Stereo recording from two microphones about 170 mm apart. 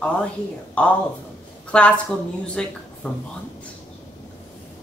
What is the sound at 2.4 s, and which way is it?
Speech, 5° left (ahead or behind).